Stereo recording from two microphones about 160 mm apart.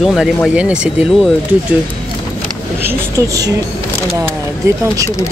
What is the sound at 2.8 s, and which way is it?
Speech, 15° right (ahead or behind).